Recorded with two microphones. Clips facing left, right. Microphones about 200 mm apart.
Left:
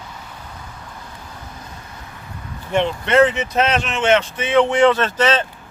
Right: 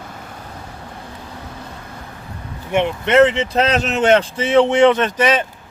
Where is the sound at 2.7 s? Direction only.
20° right (ahead or behind).